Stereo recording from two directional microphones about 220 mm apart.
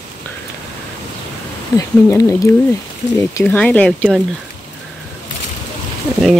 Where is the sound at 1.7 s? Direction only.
15° left (ahead or behind).